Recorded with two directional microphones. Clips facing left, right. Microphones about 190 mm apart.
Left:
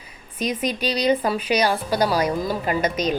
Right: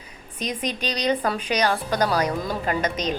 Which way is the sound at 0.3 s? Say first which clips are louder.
Left 4 dB; 10° left (ahead or behind).